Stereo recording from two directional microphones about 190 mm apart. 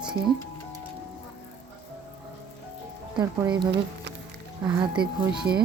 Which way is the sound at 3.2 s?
20° right (ahead or behind).